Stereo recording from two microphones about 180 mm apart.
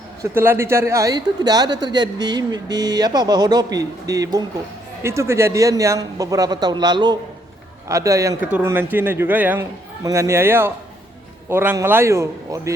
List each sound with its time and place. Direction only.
0.2 s a man's voice: 15° right (ahead or behind)